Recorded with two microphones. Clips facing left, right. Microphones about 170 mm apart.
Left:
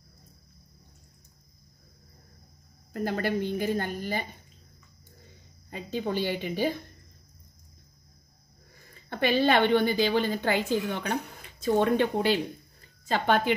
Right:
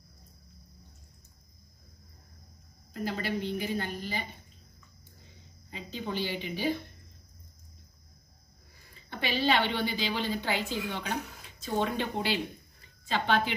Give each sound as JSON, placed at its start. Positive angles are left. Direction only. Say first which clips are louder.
{"t": 2.9, "sound": "a woman's voice", "louder": "left 5 dB", "side_deg": 50}
{"t": 5.7, "sound": "a woman's voice", "louder": "left 6 dB", "side_deg": 50}
{"t": 9.1, "sound": "a woman's voice", "louder": "left 5 dB", "side_deg": 55}